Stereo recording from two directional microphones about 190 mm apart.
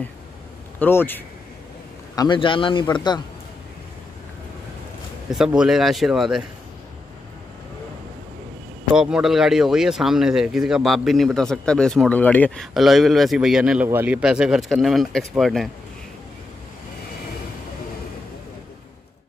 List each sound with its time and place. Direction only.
0.7 s a man's voice: 10° left (ahead or behind)
2.1 s a man's voice: 25° left (ahead or behind)
5.3 s speech: 5° right (ahead or behind)
8.9 s speech: 5° right (ahead or behind)